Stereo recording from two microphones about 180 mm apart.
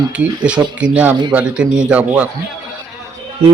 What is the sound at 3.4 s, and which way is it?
Speech, 30° right (ahead or behind).